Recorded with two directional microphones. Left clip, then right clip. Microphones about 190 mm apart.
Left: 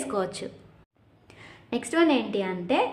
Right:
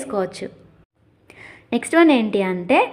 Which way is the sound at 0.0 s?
20° right (ahead or behind).